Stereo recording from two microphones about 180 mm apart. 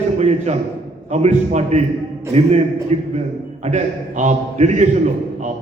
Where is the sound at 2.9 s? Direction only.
40° right (ahead or behind).